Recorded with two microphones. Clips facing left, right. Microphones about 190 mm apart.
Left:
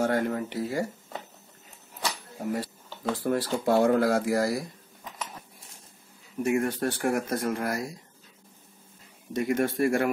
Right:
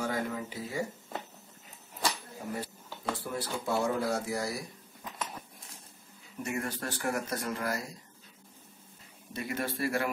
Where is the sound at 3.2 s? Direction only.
85° left.